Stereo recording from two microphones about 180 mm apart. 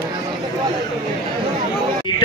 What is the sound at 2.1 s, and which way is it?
Speech, 25° left (ahead or behind).